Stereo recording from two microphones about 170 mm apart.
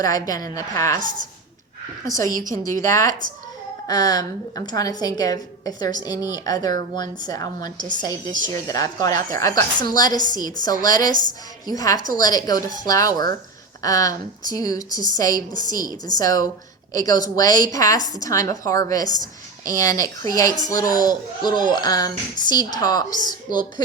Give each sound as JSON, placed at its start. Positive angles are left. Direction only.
{"t": 0.0, "sound": "a woman's voice", "side_deg": 20}
{"t": 2.0, "sound": "a woman's voice", "side_deg": 20}
{"t": 3.1, "sound": "speech", "side_deg": -50}
{"t": 3.8, "sound": "a woman's voice", "side_deg": 20}